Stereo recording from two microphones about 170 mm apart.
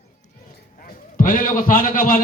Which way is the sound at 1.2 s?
50° left (ahead or behind).